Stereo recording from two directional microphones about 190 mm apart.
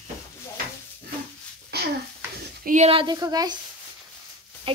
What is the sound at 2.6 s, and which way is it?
Stir, 40° right (ahead or behind).